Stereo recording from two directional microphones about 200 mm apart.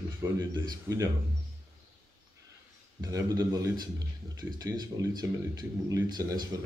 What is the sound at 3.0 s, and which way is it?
Speech, 15° right (ahead or behind).